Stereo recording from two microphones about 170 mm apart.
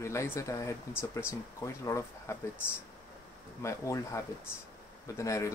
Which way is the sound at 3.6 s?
15° left (ahead or behind).